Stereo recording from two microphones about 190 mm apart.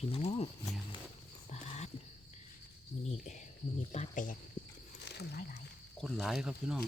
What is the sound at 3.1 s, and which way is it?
Speech, 40° left (ahead or behind).